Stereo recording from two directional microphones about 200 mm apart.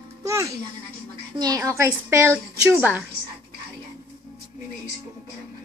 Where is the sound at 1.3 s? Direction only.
20° right (ahead or behind).